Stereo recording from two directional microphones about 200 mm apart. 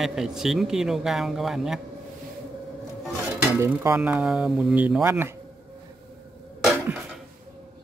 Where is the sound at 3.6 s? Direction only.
10° right (ahead or behind).